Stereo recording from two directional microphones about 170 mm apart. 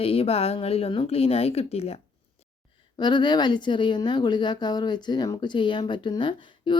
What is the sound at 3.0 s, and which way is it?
A woman's voice, 25° left (ahead or behind).